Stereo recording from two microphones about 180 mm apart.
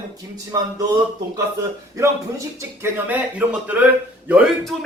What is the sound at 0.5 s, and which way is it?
Speech, 20° right (ahead or behind).